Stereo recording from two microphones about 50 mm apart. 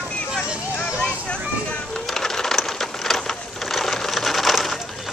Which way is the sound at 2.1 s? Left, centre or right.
Centre.